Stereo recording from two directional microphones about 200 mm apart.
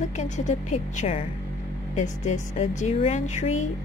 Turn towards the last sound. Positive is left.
turn(degrees=35)  # may be behind; listen again after turning